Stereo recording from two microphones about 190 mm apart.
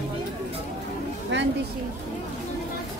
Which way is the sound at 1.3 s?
70° right (ahead or behind).